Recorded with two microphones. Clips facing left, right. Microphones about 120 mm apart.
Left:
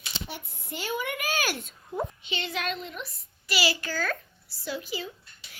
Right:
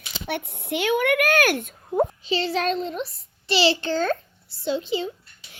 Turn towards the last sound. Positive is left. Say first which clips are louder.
# right 9 dB
turn(degrees=-25)  # may be behind; listen again after turning